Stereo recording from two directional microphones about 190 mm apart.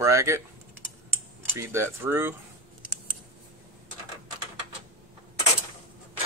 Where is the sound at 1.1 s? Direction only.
15° right (ahead or behind).